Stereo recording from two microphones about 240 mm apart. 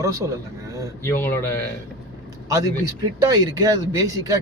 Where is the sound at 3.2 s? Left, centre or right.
Centre.